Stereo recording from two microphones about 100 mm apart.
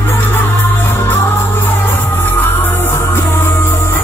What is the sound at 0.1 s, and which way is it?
Music, 20° left (ahead or behind).